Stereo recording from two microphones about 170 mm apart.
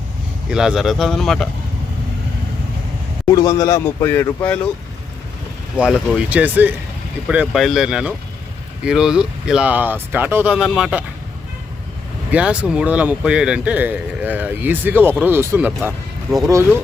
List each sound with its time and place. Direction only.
0.5 s speech: 5° right (ahead or behind)
3.3 s speech: 20° left (ahead or behind)
5.7 s a man's voice: 5° right (ahead or behind)
12.3 s a man's voice: 5° right (ahead or behind)